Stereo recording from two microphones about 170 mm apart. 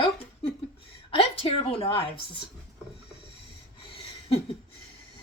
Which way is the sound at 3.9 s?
30° left (ahead or behind).